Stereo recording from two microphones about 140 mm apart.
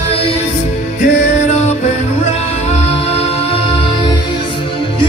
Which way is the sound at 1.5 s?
50° left (ahead or behind).